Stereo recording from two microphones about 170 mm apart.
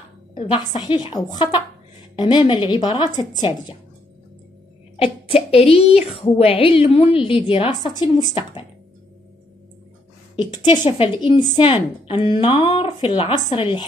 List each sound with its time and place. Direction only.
0.5 s speech: 25° left (ahead or behind)
4.9 s a woman's voice: 35° left (ahead or behind)
10.5 s a woman's voice: 25° left (ahead or behind)